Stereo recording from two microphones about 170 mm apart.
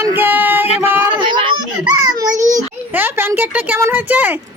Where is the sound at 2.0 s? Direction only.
20° right (ahead or behind).